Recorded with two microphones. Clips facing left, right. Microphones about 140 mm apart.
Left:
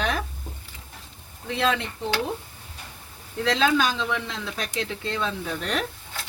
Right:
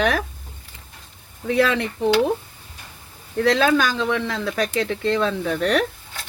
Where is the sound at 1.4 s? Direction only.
65° right (ahead or behind).